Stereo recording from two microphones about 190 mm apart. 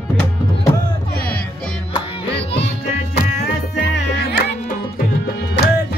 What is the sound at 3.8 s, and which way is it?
Music, 55° left (ahead or behind).